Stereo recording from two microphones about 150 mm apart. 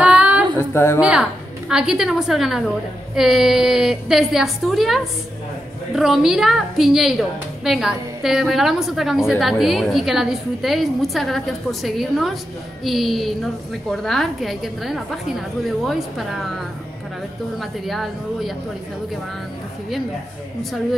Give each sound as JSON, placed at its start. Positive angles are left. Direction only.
{"t": 0.0, "sound": "a sound", "side_deg": -10}
{"t": 0.6, "sound": "a woman's voice", "side_deg": 15}
{"t": 1.7, "sound": "a woman's voice", "side_deg": -5}